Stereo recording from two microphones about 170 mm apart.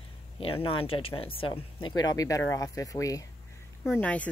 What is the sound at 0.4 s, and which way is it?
Speech, 30° left (ahead or behind).